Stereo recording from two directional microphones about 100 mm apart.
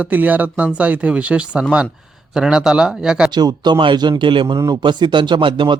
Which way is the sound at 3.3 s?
45° right (ahead or behind).